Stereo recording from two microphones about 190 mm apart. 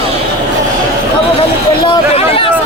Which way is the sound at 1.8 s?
25° left (ahead or behind).